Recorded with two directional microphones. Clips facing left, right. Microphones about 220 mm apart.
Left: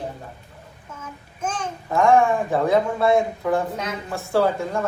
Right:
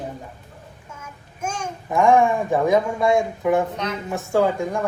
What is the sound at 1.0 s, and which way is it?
Babbling, 10° right (ahead or behind).